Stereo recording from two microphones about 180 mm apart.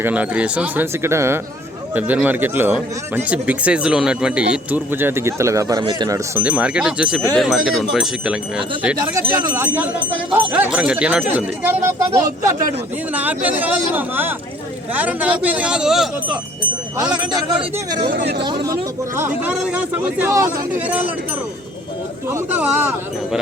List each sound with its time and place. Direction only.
0.0 s speech: 10° right (ahead or behind)
6.3 s speech: 10° right (ahead or behind)
9.0 s speech: 20° right (ahead or behind)
17.6 s speech: 30° right (ahead or behind)
18.2 s speech: 65° right (ahead or behind)
18.4 s speech: 20° right (ahead or behind)
22.3 s speech: 10° right (ahead or behind)